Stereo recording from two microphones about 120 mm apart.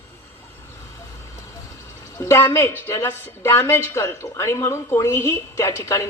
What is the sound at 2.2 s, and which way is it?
A woman's voice, 20° left (ahead or behind).